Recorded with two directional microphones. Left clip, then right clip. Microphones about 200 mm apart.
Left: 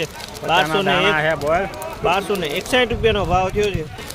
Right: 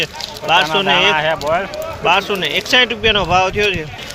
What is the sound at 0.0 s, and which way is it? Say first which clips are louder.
Speech: right 5 dB; 15° left (ahead or behind).